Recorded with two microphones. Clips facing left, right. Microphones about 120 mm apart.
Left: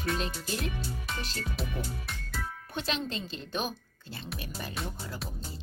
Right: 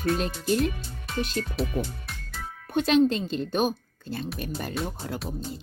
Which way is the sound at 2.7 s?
55° right (ahead or behind).